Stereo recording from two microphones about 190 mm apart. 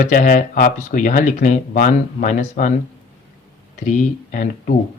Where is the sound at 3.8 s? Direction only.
40° left (ahead or behind).